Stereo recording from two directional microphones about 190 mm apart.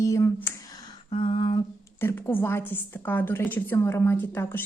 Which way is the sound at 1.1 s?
25° left (ahead or behind).